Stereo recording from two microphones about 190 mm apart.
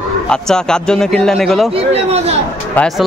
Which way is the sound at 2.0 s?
35° right (ahead or behind).